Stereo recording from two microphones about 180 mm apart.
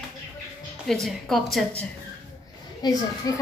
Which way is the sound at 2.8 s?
20° left (ahead or behind).